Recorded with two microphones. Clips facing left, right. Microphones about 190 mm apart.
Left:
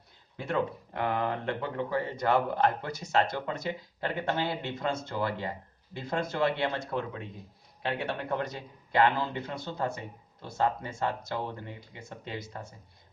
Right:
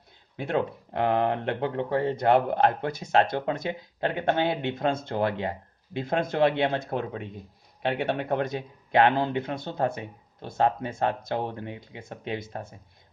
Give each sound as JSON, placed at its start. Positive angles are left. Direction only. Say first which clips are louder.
{"t": 0.3, "sound": "speech", "louder": "right 3 dB", "side_deg": -60}